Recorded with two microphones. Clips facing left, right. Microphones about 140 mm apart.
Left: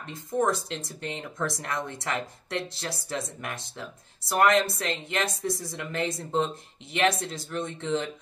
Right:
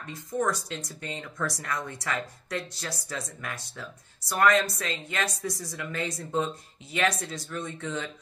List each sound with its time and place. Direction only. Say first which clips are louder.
0.1 s speech: left 3 dB; 25° left (ahead or behind)